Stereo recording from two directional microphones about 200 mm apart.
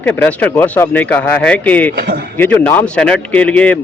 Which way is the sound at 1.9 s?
50° right (ahead or behind).